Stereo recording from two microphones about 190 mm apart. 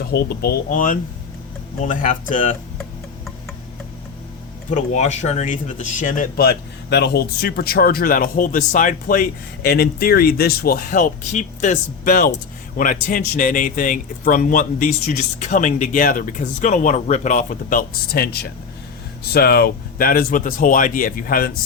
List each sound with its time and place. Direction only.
0.0 s speech: 55° left (ahead or behind)
4.7 s speech: 40° left (ahead or behind)